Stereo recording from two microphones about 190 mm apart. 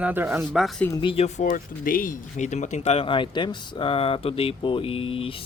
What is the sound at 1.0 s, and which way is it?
Speech, 30° left (ahead or behind).